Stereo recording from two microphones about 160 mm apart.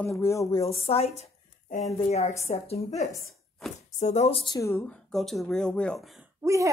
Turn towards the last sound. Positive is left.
turn(degrees=-20)  # may be behind; listen again after turning